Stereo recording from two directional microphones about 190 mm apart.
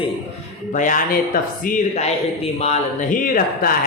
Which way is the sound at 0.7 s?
45° left (ahead or behind).